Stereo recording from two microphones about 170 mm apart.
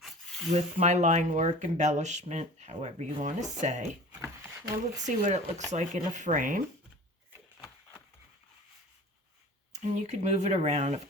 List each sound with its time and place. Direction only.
0.0 s rub: 5° left (ahead or behind)
0.5 s speech: 40° right (ahead or behind)
4.9 s speech: 45° right (ahead or behind)
9.7 s speech: 40° right (ahead or behind)